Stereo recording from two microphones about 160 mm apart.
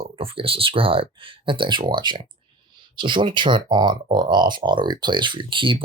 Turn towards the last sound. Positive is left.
turn(degrees=-30)  # may be behind; listen again after turning